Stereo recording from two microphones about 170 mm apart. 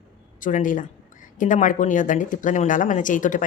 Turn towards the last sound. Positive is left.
turn(degrees=50)  # may be behind; listen again after turning